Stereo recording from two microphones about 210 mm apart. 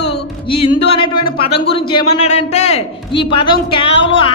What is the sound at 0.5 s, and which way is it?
A man's voice, 25° left (ahead or behind).